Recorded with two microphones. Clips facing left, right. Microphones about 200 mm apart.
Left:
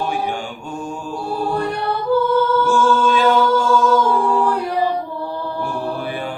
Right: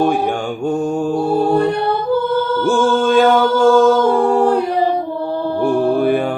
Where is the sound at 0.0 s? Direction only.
50° right (ahead or behind).